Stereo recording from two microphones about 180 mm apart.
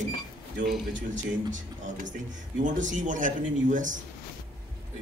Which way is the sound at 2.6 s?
45° right (ahead or behind).